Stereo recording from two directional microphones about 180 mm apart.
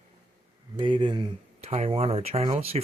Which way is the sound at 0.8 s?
30° right (ahead or behind).